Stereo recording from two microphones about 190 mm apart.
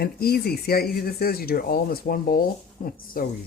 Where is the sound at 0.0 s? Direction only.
55° left (ahead or behind).